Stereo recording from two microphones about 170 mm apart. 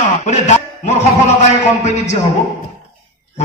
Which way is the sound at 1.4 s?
40° left (ahead or behind).